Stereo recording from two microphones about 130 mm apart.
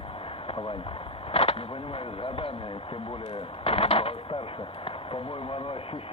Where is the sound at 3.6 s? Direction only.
50° left (ahead or behind).